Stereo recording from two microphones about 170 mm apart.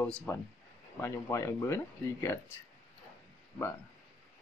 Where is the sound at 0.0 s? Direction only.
5° left (ahead or behind).